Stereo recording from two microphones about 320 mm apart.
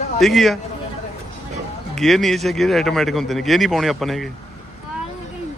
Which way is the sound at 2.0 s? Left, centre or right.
Centre.